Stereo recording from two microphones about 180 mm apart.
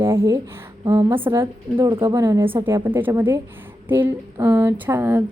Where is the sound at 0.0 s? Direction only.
15° right (ahead or behind).